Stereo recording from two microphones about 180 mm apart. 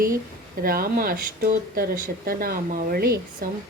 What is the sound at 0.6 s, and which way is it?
Speech, 55° right (ahead or behind).